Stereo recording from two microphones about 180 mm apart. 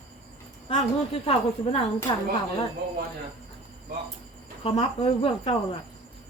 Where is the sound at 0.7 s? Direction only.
35° left (ahead or behind).